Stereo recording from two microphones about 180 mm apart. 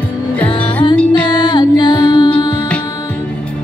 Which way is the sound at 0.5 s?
30° left (ahead or behind).